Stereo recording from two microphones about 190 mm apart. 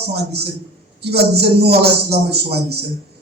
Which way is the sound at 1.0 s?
60° right (ahead or behind).